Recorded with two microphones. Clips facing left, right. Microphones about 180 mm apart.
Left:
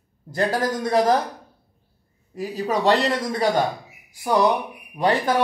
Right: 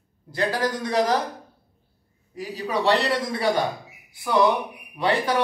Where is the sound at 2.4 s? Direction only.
45° left (ahead or behind).